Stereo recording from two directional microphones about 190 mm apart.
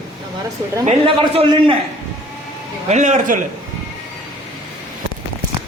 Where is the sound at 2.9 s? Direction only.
40° right (ahead or behind).